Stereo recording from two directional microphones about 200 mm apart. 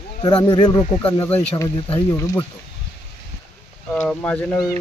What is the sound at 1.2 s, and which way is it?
Speech, 10° left (ahead or behind).